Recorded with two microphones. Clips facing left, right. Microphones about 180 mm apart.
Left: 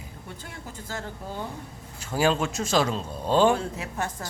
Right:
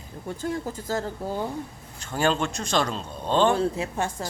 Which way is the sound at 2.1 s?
5° left (ahead or behind).